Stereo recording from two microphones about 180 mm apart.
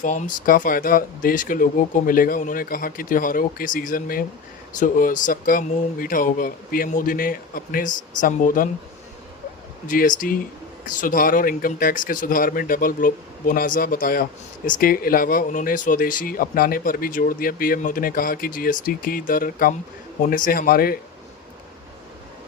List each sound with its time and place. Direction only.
0.0 s speech: 45° left (ahead or behind)
9.8 s speech: 50° left (ahead or behind)